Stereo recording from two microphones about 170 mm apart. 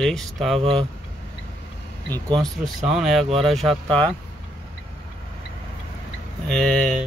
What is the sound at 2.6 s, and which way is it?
Speech, centre (ahead or behind).